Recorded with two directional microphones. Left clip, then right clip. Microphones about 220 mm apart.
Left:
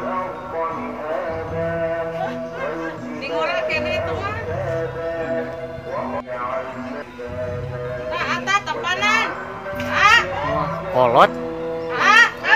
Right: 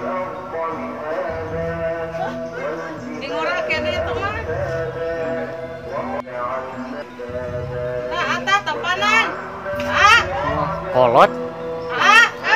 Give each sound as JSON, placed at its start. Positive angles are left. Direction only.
{"t": 3.3, "sound": "chatter", "side_deg": -45}
{"t": 8.1, "sound": "children playing", "side_deg": -45}
{"t": 9.8, "sound": "music", "side_deg": -45}
{"t": 11.0, "sound": "speech", "side_deg": 0}
{"t": 11.9, "sound": "music", "side_deg": -45}